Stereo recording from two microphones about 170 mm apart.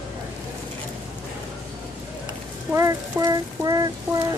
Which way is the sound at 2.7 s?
15° right (ahead or behind).